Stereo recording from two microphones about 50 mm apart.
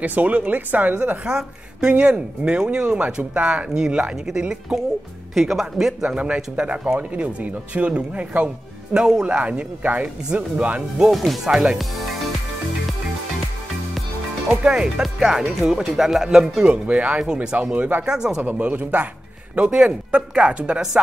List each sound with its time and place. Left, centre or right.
0.0 s speech: right
1.2 s speech: centre
2.0 s speech: right
2.4 s speech: centre
5.3 s speech: centre
6.1 s speech: right
8.9 s speech: centre
11.1 s speech: centre
11.4 s speech: centre
14.5 s speech: right
14.8 s speech: centre
16.6 s speech: right
18.0 s speech: centre
18.6 s a man's voice: right